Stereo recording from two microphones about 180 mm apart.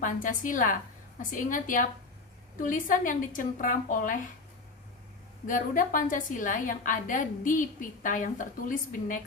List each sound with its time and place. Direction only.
0.0 s a woman's voice: 45° left (ahead or behind)
5.5 s a woman's voice: 50° left (ahead or behind)